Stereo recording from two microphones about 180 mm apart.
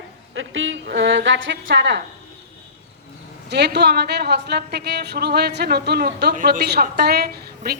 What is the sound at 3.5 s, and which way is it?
A woman's voice, 70° right (ahead or behind).